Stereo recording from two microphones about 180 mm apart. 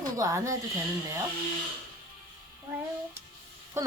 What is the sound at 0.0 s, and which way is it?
Speech, 20° right (ahead or behind).